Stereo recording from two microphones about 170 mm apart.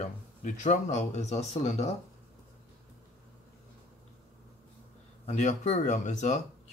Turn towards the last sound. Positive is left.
turn(degrees=45)  # may be behind; listen again after turning